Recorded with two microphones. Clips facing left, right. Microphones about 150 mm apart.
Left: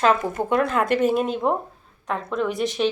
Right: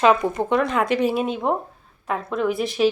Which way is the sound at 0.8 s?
50° left (ahead or behind).